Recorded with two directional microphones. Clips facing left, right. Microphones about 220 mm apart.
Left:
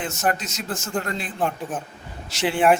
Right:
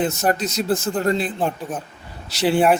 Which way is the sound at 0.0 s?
35° right (ahead or behind).